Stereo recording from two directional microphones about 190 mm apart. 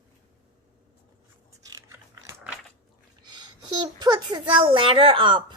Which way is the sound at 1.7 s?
20° right (ahead or behind).